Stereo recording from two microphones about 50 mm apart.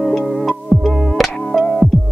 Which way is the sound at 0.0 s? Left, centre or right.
Centre.